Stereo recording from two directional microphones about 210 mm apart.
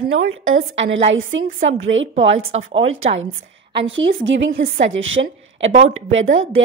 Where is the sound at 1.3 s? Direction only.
65° right (ahead or behind).